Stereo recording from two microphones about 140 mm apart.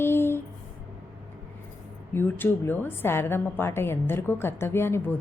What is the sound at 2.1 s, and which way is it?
Mantra, 15° left (ahead or behind).